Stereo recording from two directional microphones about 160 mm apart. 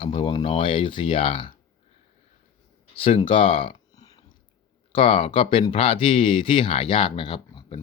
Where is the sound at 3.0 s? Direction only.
35° left (ahead or behind).